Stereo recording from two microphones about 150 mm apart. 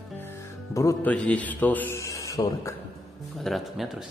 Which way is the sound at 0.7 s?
20° left (ahead or behind).